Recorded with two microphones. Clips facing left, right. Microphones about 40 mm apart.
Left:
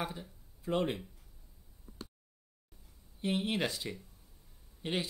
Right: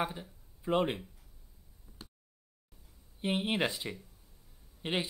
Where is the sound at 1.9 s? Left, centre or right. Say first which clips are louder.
Left 5 dB; centre.